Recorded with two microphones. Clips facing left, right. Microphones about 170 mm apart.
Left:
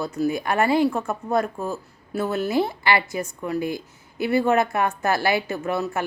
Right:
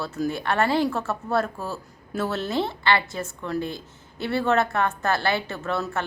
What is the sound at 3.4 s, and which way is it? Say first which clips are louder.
A woman's voice: left 2 dB; 10° left (ahead or behind).